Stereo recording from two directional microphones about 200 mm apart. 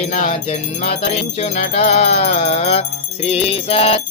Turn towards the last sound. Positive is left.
turn(degrees=30)  # may be behind; listen again after turning